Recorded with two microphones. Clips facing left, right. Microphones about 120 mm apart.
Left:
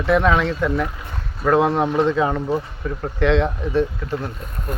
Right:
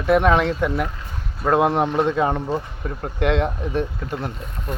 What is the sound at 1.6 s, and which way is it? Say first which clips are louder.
Speech: even; 15° right (ahead or behind).